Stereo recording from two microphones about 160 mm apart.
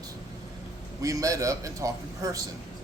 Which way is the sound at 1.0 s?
20° right (ahead or behind).